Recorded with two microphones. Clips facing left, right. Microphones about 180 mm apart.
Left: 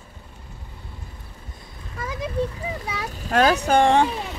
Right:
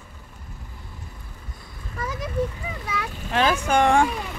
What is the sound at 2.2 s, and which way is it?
A child's voice, 30° left (ahead or behind).